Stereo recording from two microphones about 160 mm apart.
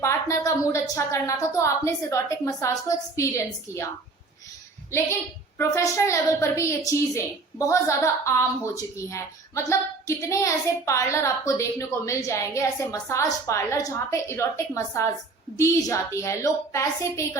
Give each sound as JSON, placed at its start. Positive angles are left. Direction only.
{"t": 0.0, "sound": "a woman's voice", "side_deg": 20}
{"t": 5.5, "sound": "a woman's voice", "side_deg": 20}